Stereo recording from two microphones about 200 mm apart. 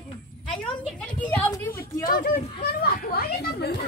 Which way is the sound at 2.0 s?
45° left (ahead or behind).